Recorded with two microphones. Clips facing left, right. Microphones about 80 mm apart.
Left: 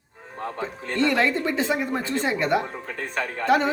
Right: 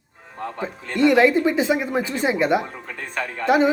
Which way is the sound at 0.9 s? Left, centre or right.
Centre.